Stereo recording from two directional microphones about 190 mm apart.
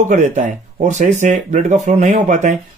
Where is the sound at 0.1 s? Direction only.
40° right (ahead or behind).